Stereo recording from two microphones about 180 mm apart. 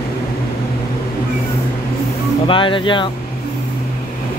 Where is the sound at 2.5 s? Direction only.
30° left (ahead or behind).